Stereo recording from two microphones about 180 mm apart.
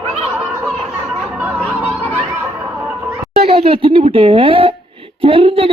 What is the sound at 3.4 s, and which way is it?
Speech, 30° right (ahead or behind).